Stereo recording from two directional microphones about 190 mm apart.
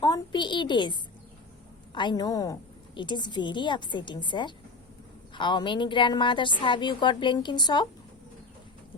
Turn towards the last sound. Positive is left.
turn(degrees=25)  # may be behind; listen again after turning